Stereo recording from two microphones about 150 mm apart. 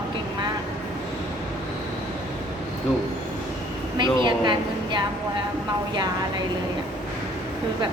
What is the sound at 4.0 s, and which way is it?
A woman's voice, 30° right (ahead or behind).